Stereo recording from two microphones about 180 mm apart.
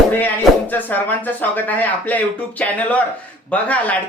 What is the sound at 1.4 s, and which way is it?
Speech, 10° left (ahead or behind).